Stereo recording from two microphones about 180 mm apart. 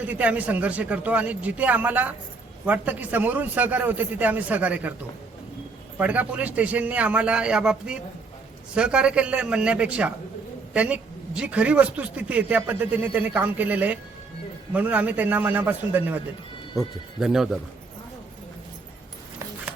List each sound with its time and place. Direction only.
0.0 s a man's voice: 10° right (ahead or behind)
6.0 s a man's voice: 5° right (ahead or behind)